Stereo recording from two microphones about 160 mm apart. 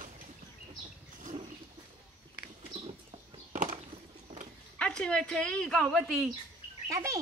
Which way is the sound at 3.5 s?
55° right (ahead or behind).